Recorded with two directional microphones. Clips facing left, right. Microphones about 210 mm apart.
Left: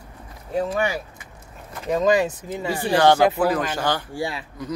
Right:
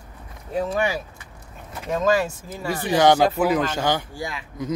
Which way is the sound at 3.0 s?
10° right (ahead or behind).